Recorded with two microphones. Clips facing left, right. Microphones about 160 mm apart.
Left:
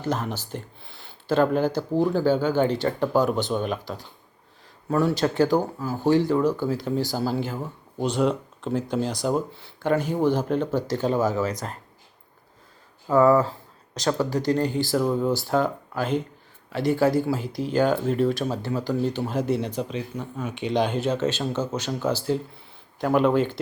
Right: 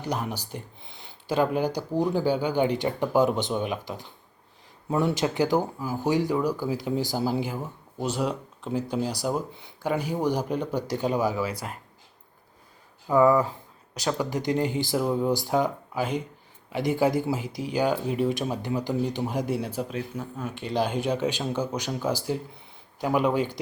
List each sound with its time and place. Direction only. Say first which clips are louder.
0.0 s speech: left 3 dB; 15° right (ahead or behind)
13.1 s speech: left 2 dB; 15° right (ahead or behind)